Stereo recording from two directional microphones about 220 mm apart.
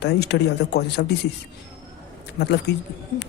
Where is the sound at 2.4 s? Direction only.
50° left (ahead or behind).